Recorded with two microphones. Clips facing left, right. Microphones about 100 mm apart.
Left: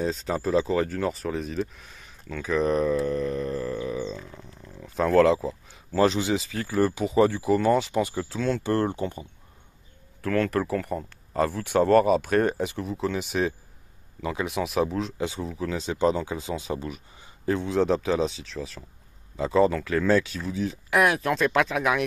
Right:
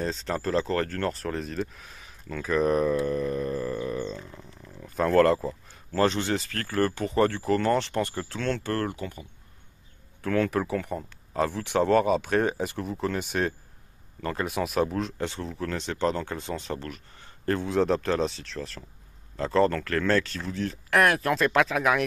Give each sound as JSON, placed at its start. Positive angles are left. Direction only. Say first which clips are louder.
{"t": 0.0, "sound": "speech", "louder": "left 2 dB", "side_deg": 5}
{"t": 8.6, "sound": "speech", "louder": "left 4 dB", "side_deg": 25}
{"t": 10.2, "sound": "speech", "louder": "left 1 dB", "side_deg": 0}
{"t": 17.6, "sound": "speech", "louder": "left 1 dB", "side_deg": 0}